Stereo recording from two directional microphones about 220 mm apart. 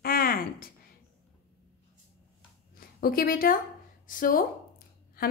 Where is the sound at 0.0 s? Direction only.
40° left (ahead or behind).